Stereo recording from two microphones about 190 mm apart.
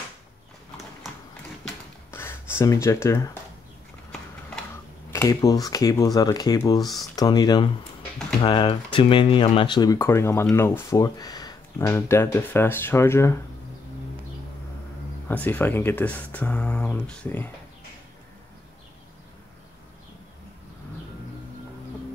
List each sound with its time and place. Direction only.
2.0 s a sound: 10° left (ahead or behind)
5.1 s speech: 15° left (ahead or behind)
15.2 s speech: 10° left (ahead or behind)